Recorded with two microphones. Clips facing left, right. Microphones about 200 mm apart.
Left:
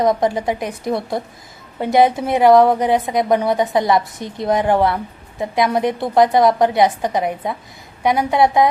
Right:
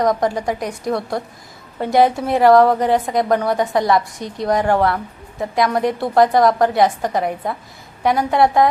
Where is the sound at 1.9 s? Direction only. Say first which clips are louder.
Left 1 dB; 20° left (ahead or behind).